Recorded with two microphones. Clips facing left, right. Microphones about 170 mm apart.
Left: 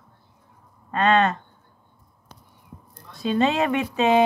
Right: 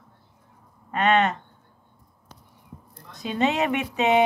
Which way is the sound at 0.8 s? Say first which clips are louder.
Left 1 dB; 20° right (ahead or behind).